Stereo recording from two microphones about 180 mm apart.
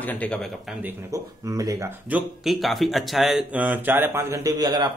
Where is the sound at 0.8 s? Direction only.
20° right (ahead or behind).